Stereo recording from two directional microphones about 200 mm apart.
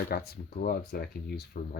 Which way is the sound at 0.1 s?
50° left (ahead or behind).